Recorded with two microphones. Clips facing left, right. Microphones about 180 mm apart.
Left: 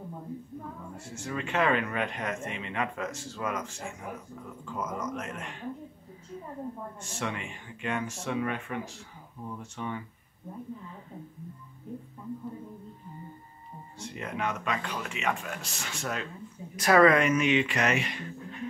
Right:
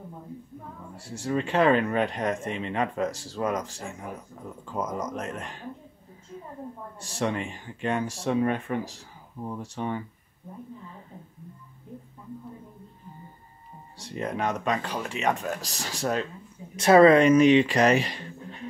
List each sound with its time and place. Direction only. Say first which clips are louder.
0.9 s speech: right 9 dB; 35° right (ahead or behind)
7.0 s speech: right 9 dB; 35° right (ahead or behind)
13.9 s speech: right 5 dB; 35° right (ahead or behind)